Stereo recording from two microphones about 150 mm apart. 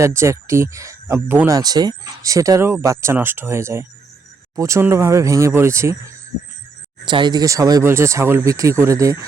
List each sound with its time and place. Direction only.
0.0 s speech: 20° right (ahead or behind)
7.0 s speech: 30° right (ahead or behind)